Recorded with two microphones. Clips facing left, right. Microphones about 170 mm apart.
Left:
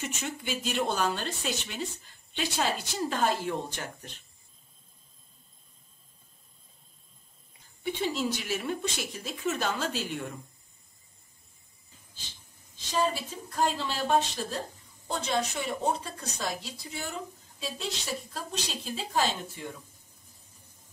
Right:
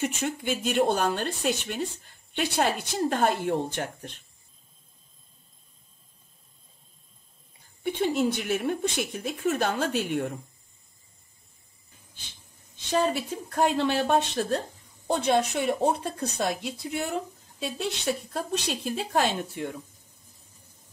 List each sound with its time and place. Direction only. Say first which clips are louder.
0.0 s speech: right 7 dB; 55° right (ahead or behind)
7.8 s speech: right 5 dB; 55° right (ahead or behind)
12.9 s speech: right 4 dB; 60° right (ahead or behind)